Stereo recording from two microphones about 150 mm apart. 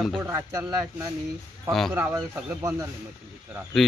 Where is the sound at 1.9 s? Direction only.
15° right (ahead or behind).